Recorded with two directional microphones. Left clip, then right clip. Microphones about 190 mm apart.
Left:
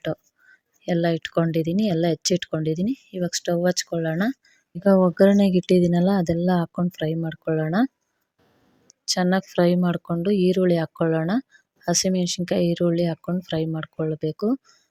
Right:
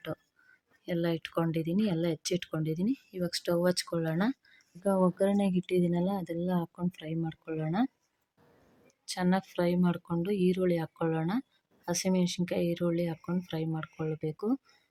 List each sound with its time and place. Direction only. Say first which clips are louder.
0.9 s speech: left 9 dB; 25° left (ahead or behind)
8.9 s speech: left 9 dB; 25° left (ahead or behind)